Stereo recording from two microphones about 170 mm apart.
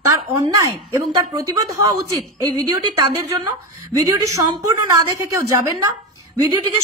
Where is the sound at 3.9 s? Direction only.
20° right (ahead or behind).